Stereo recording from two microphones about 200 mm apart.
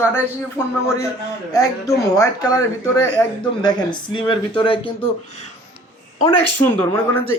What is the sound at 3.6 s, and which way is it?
Speech, 25° left (ahead or behind).